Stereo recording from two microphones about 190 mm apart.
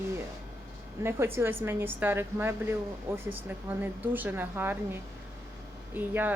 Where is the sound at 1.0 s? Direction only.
10° right (ahead or behind).